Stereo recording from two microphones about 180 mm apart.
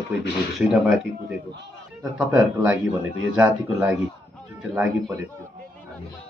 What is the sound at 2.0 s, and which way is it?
Speech, 5° right (ahead or behind).